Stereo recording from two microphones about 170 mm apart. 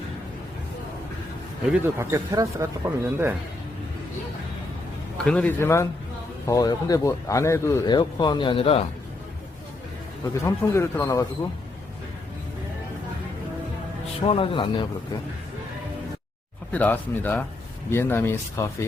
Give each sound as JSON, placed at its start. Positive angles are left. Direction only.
{"t": 1.7, "sound": "speech", "side_deg": -15}
{"t": 5.1, "sound": "speech", "side_deg": 5}
{"t": 10.4, "sound": "speech", "side_deg": 15}
{"t": 14.3, "sound": "speech", "side_deg": 30}
{"t": 16.7, "sound": "speech", "side_deg": 10}